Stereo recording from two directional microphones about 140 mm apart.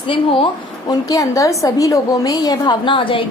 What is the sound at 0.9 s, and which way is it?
A woman's voice, 25° left (ahead or behind).